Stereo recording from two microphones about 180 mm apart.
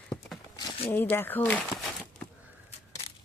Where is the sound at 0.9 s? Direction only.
10° left (ahead or behind).